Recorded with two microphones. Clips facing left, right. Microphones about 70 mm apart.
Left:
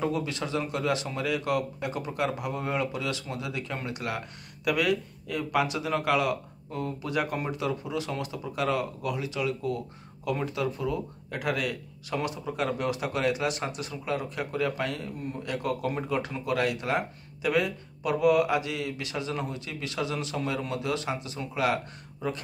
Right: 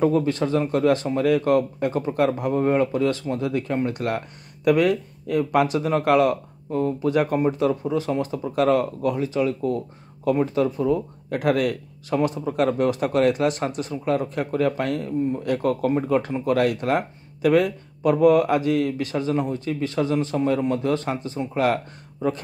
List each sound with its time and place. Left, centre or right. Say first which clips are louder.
0.0 s speech: right 9 dB; right